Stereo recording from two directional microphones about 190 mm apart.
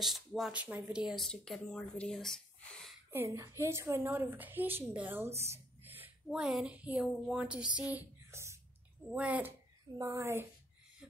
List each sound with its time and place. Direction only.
0.0 s speech: centre (ahead or behind)
3.1 s a woman's voice: 15° right (ahead or behind)